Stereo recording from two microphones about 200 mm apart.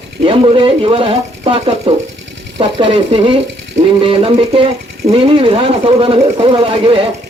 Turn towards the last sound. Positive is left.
turn(degrees=-25)  # may be behind; listen again after turning